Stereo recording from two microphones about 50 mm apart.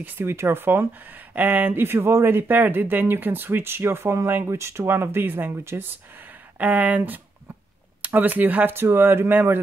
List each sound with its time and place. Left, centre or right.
0.2 s speech: right
1.8 s speech: right
4.8 s speech: right
6.6 s speech: right
8.7 s speech: right